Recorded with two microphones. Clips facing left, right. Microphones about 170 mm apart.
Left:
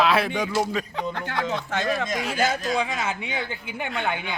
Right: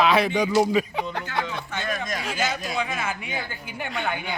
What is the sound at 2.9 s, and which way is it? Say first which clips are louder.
A woman's voice: left 1 dB; 25° left (ahead or behind).